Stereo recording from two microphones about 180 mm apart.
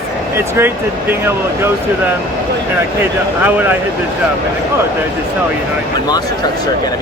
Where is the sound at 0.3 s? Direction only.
15° right (ahead or behind).